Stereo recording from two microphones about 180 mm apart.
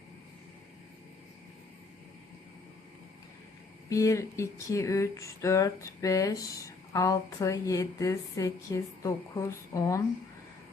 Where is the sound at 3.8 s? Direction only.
15° left (ahead or behind).